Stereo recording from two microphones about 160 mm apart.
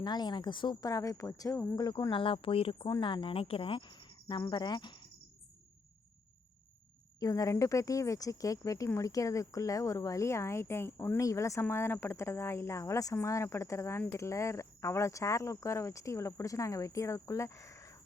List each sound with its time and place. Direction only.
0.0 s speech: 25° left (ahead or behind)
7.2 s speech: 20° left (ahead or behind)